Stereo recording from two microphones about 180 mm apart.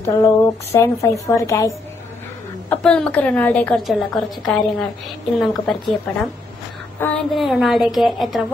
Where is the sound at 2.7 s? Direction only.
5° left (ahead or behind).